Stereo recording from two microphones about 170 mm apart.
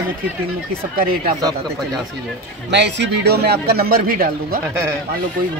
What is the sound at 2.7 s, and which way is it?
A man's voice, 90° right.